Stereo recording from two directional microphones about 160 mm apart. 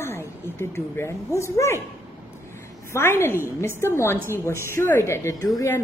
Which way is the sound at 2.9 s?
15° left (ahead or behind).